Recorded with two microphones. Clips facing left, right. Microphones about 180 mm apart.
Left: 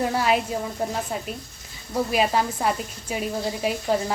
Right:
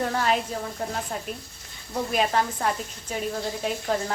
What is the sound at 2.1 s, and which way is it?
Speech, 10° left (ahead or behind).